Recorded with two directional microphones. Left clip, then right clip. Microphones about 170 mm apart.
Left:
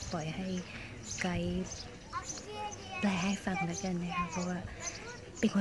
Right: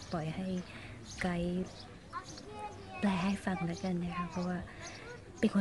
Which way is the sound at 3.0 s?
25° right (ahead or behind).